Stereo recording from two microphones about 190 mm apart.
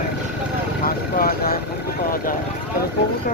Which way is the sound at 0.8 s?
50° left (ahead or behind).